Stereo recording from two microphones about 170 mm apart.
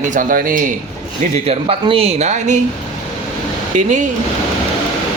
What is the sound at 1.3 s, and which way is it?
Speech, 40° right (ahead or behind).